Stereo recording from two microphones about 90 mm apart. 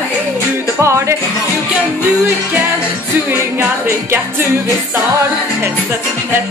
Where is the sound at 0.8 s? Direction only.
30° right (ahead or behind).